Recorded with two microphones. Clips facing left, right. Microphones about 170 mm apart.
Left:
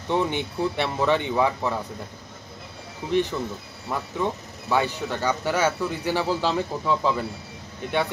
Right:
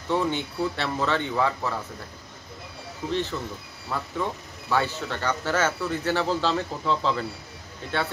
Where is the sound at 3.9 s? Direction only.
15° left (ahead or behind).